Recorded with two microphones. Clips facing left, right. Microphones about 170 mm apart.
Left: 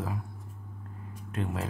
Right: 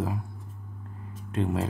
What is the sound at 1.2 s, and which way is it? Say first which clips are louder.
Speech: right 6 dB; 30° right (ahead or behind).